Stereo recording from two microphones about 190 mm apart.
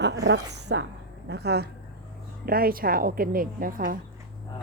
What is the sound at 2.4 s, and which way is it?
Speech, 50° right (ahead or behind).